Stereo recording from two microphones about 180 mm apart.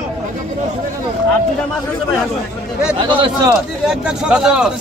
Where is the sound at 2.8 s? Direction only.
5° right (ahead or behind).